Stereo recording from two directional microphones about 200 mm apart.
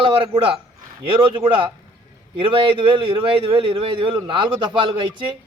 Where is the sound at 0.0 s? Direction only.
25° right (ahead or behind).